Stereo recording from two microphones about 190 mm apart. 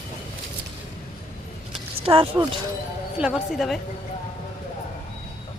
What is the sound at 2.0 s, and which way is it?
Speech, 30° right (ahead or behind).